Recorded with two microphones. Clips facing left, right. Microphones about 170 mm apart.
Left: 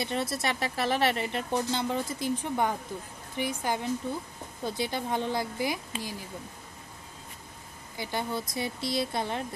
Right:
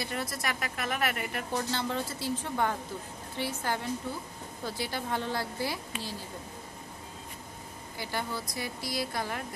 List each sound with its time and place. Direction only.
0.0 s a woman's voice: 25° left (ahead or behind)
8.0 s a woman's voice: 20° left (ahead or behind)